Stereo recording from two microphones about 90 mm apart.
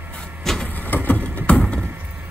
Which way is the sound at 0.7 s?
20° left (ahead or behind).